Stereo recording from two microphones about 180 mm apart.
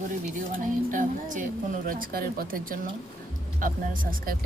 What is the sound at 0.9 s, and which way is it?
Speech, 45° right (ahead or behind).